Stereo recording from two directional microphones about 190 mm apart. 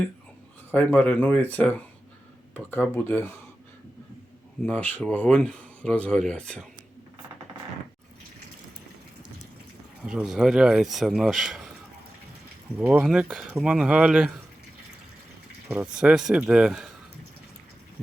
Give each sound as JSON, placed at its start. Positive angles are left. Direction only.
{"t": 0.7, "sound": "speech", "side_deg": 10}
{"t": 4.6, "sound": "speech", "side_deg": 10}
{"t": 10.1, "sound": "speech", "side_deg": -5}
{"t": 12.7, "sound": "speech", "side_deg": -5}
{"t": 16.0, "sound": "speech", "side_deg": -5}